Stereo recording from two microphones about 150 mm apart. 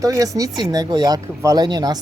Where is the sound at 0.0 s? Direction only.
20° right (ahead or behind).